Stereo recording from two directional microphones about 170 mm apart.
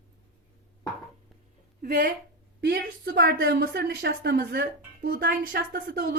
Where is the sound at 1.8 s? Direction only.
55° right (ahead or behind).